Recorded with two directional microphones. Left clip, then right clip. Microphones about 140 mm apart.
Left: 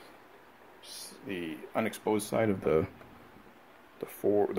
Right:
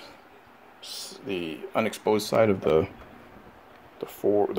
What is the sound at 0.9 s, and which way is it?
Speech, 30° right (ahead or behind).